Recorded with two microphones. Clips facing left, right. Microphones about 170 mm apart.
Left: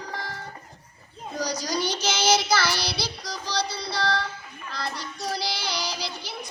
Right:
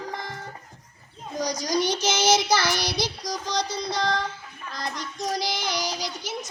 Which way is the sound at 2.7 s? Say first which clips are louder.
Right 3 dB; 45° right (ahead or behind).